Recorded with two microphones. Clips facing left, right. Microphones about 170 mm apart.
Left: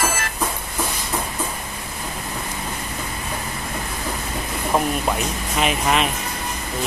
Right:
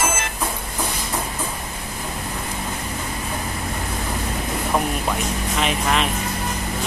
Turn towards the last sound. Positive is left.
turn(degrees=5)  # may be behind; listen again after turning